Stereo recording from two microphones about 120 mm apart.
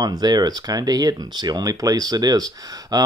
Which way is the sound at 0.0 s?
35° right (ahead or behind).